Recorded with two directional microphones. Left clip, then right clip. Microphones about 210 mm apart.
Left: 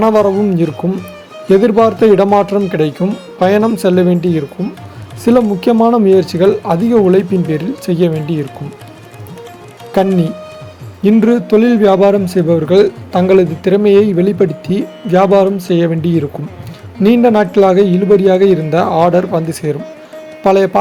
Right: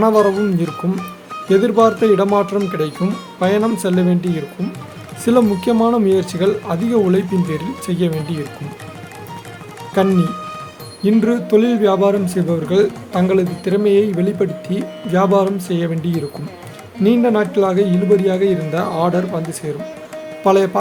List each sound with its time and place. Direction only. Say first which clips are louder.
0.0 s a man's voice: left 3 dB; 20° left (ahead or behind)
9.9 s a man's voice: left 3 dB; 25° left (ahead or behind)